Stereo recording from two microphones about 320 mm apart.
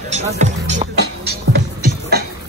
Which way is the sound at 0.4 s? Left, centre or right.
Right.